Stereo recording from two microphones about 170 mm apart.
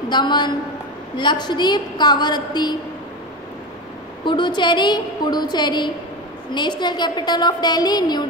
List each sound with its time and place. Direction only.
0.1 s a woman's voice: 25° left (ahead or behind)
4.2 s a woman's voice: 25° left (ahead or behind)